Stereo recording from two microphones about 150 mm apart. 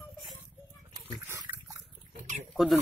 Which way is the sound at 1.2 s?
20° right (ahead or behind).